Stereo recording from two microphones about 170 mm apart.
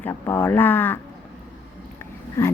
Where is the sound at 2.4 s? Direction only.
15° left (ahead or behind).